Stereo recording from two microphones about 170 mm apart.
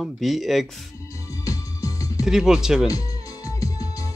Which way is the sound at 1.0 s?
20° left (ahead or behind).